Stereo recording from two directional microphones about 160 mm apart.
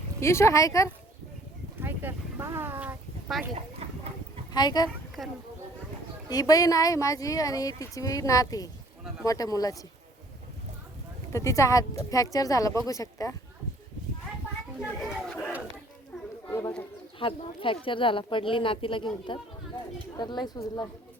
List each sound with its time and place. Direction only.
0.2 s speech: 15° left (ahead or behind)
1.8 s speech: 10° right (ahead or behind)
3.3 s speech: centre (ahead or behind)
3.8 s a sound: 40° right (ahead or behind)
4.5 s speech: 25° left (ahead or behind)
5.2 s speech: centre (ahead or behind)
6.2 s speech: 25° left (ahead or behind)
11.3 s speech: 20° left (ahead or behind)
15.0 s battle cry: centre (ahead or behind)
16.5 s bird: 20° left (ahead or behind)
17.2 s speech: 35° left (ahead or behind)